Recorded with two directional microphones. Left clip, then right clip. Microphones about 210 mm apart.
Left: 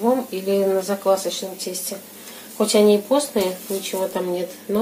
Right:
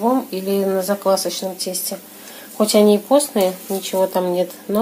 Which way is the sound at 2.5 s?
40° right (ahead or behind).